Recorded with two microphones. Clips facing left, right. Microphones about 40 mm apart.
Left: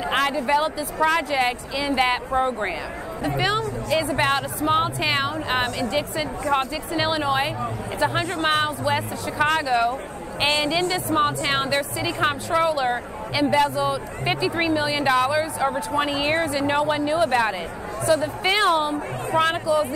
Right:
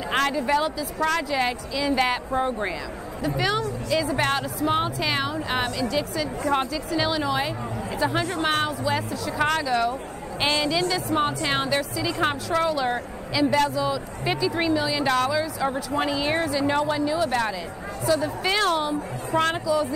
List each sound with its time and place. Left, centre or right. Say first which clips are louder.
0.1 s speech: left 1 dB; centre
0.7 s a woman's voice: left 2 dB; left
1.0 s a woman's voice: left 3 dB; centre
4.2 s a woman's voice: left 2 dB; centre
15.0 s a woman's voice: left 5 dB; centre
19.6 s speech: left 2 dB; left